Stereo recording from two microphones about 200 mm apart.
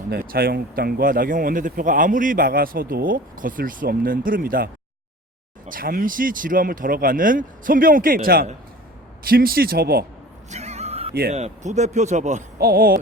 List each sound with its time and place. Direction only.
0.1 s speech: 50° right (ahead or behind)
10.5 s neigh: 35° right (ahead or behind)
11.1 s speech: 50° right (ahead or behind)
11.3 s speech: 35° right (ahead or behind)
12.5 s speech: 45° right (ahead or behind)